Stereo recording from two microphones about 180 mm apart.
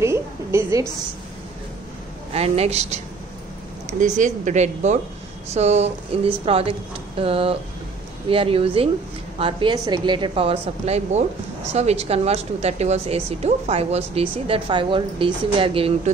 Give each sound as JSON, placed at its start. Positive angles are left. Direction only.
{"t": 0.0, "sound": "a woman's voice", "side_deg": -15}
{"t": 2.3, "sound": "a woman's voice", "side_deg": -35}
{"t": 4.0, "sound": "a woman's voice", "side_deg": -45}